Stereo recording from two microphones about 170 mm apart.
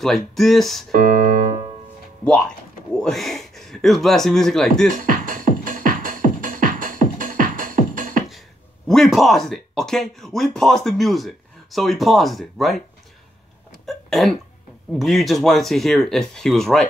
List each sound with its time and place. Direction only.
0.0 s speech: centre (ahead or behind)
0.9 s piano: 50° right (ahead or behind)
2.9 s speech: 5° left (ahead or behind)
5.0 s music: 55° right (ahead or behind)
8.3 s speech: centre (ahead or behind)
13.8 s hiccup: centre (ahead or behind)
15.0 s speech: centre (ahead or behind)